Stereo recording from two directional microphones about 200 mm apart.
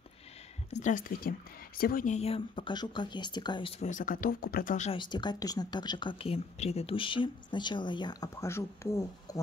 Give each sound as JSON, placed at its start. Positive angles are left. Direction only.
{"t": 0.7, "sound": "speech", "side_deg": 35}
{"t": 3.8, "sound": "speech", "side_deg": 40}
{"t": 4.9, "sound": "speech", "side_deg": 20}